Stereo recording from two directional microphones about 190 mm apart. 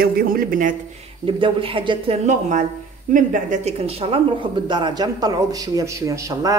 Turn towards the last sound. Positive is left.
turn(degrees=-20)  # may be behind; listen again after turning